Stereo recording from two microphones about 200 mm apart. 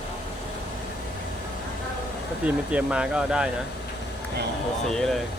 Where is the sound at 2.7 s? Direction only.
5° right (ahead or behind).